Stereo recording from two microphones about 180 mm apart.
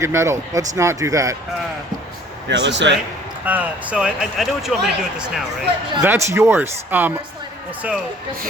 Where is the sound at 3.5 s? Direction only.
10° right (ahead or behind).